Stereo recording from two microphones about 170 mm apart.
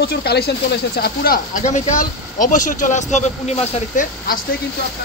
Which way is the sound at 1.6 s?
45° left (ahead or behind).